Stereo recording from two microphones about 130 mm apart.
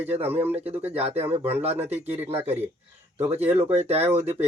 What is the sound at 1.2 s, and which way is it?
Speech, 50° right (ahead or behind).